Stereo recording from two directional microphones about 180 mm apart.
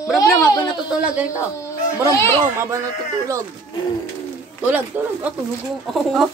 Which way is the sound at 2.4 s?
15° right (ahead or behind).